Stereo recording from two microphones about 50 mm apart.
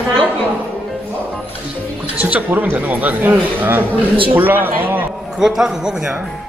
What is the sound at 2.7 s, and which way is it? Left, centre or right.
Speech, right.